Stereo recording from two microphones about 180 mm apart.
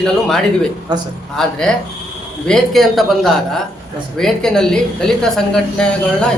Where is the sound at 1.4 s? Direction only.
Centre (ahead or behind).